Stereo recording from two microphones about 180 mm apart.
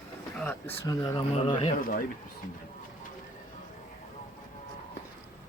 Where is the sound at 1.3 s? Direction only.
30° left (ahead or behind).